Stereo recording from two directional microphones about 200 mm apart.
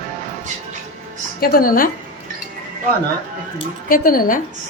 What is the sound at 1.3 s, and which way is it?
Speech, 45° left (ahead or behind).